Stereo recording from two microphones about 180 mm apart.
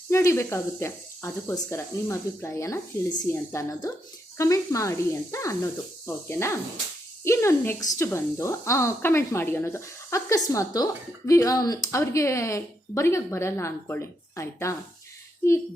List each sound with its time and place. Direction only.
0.1 s a woman's voice: 15° left (ahead or behind)